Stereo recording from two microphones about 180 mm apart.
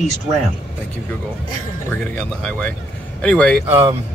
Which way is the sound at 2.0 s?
10° left (ahead or behind).